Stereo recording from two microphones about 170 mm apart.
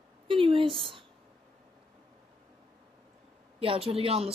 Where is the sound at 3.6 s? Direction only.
35° right (ahead or behind).